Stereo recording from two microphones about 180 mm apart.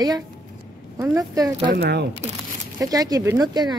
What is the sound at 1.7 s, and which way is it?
Speech, 65° right (ahead or behind).